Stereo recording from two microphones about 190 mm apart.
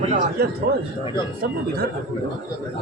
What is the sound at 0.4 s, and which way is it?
Speech, 55° right (ahead or behind).